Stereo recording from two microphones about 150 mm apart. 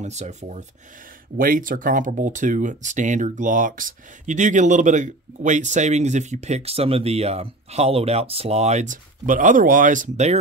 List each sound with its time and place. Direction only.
0.0 s speech: 50° right (ahead or behind)
1.4 s speech: 65° right (ahead or behind); by 10.4 s 50° right (ahead or behind)